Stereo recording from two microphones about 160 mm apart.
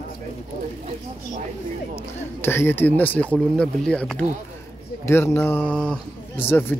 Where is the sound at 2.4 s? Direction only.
15° left (ahead or behind).